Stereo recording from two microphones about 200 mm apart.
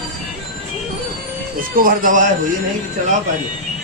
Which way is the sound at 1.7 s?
45° right (ahead or behind).